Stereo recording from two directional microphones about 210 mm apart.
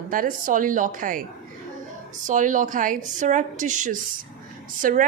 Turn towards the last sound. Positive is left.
turn(degrees=-40)  # may be behind; listen again after turning